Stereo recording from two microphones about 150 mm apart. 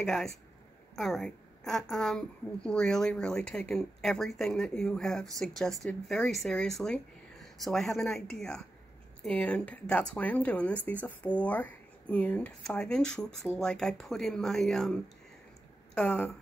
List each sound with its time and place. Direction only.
0.0 s a woman's voice: 5° left (ahead or behind)